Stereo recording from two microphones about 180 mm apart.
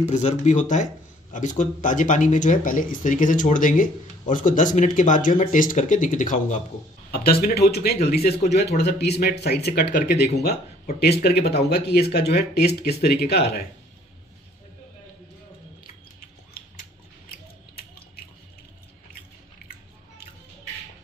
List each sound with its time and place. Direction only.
0.1 s speech: 40° left (ahead or behind)
7.1 s speech: 55° left (ahead or behind)
17.7 s drip: 55° left (ahead or behind)